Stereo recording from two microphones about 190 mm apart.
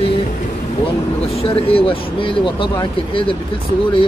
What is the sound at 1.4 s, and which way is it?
Speech, 30° left (ahead or behind).